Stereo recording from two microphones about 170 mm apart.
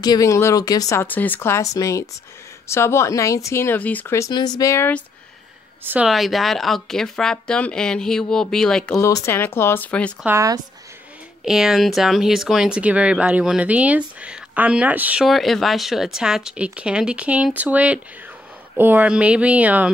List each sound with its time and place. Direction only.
0.0 s speech: 20° left (ahead or behind)
5.9 s speech: 5° right (ahead or behind)
9.0 s speech: 15° left (ahead or behind)
10.2 s speech: 20° right (ahead or behind)
11.4 s speech: 5° right (ahead or behind)